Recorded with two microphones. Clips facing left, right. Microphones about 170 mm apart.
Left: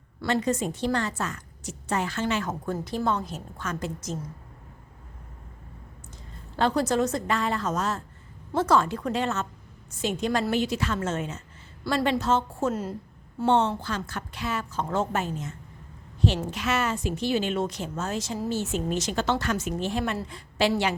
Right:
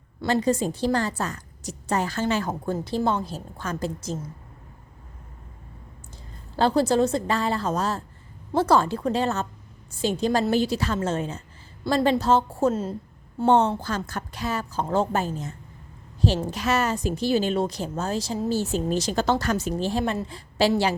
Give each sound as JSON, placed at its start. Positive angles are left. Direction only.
{"t": 0.3, "sound": "a woman's voice", "side_deg": -30}
{"t": 6.6, "sound": "a woman's voice", "side_deg": -30}